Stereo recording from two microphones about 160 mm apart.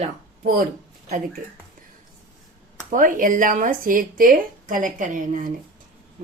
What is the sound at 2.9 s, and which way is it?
Speech, 55° right (ahead or behind).